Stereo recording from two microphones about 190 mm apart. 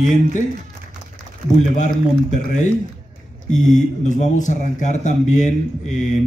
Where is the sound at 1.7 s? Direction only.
40° left (ahead or behind).